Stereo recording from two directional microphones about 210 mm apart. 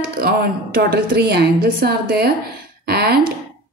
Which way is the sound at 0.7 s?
50° right (ahead or behind).